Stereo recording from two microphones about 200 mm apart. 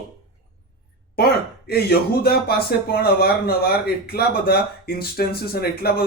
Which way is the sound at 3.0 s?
50° left (ahead or behind).